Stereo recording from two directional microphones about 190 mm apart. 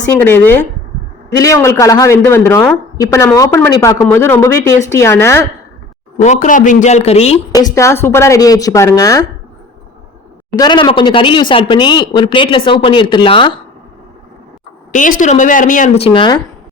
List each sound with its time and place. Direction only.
0.1 s speech: 10° left (ahead or behind)
6.1 s speech: 40° left (ahead or behind)
7.5 s speech: 15° left (ahead or behind)
10.6 s speech: 25° left (ahead or behind)
15.2 s speech: 40° left (ahead or behind)
16.0 s speech: 25° left (ahead or behind)